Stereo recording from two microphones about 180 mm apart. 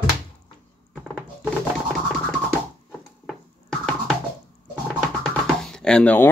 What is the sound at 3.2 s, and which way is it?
Music, 5° left (ahead or behind).